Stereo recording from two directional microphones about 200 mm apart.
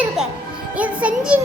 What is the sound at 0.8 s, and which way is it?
Music, 5° right (ahead or behind).